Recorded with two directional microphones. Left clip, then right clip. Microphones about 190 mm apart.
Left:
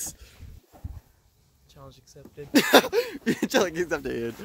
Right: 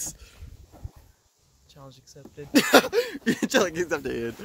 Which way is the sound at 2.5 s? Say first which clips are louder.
Even; 20° left (ahead or behind).